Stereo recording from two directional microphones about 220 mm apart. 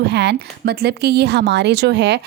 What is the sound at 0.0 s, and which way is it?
Speech, 50° right (ahead or behind).